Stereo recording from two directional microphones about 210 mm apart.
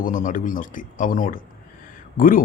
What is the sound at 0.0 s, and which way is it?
Speech, 40° left (ahead or behind).